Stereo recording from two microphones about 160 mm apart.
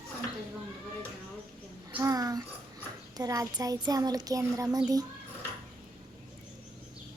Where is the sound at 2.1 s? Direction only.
25° right (ahead or behind).